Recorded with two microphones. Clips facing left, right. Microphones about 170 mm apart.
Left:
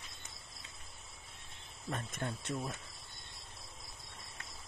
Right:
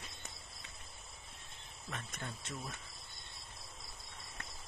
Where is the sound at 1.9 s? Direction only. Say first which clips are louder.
Left 6 dB; 50° left (ahead or behind).